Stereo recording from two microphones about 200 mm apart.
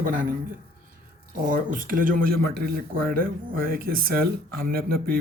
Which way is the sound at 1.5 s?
40° right (ahead or behind).